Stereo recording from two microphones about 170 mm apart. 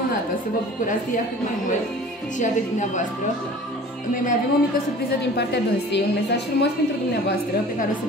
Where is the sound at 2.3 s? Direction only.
45° left (ahead or behind).